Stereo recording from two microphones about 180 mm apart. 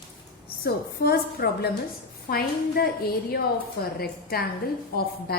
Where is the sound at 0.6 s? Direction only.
60° left (ahead or behind).